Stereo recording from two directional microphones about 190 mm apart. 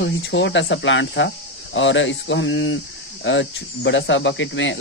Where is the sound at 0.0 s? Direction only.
70° left (ahead or behind).